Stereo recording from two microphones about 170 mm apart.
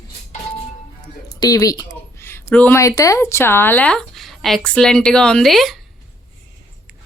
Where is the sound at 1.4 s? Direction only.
20° left (ahead or behind); by 5.8 s centre (ahead or behind).